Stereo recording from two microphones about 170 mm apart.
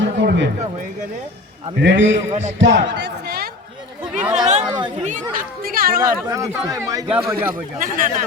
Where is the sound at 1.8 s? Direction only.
90° right; by 3.5 s 75° right (ahead or behind).